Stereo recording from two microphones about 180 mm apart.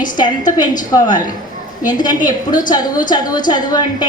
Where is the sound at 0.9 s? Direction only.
20° left (ahead or behind).